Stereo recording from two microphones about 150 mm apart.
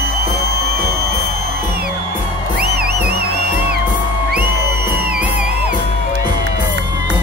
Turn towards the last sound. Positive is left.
turn(degrees=-10)  # may be behind; listen again after turning